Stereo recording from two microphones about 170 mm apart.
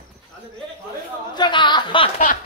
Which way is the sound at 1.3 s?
25° left (ahead or behind).